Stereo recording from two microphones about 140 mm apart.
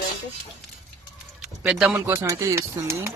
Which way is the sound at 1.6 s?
10° right (ahead or behind).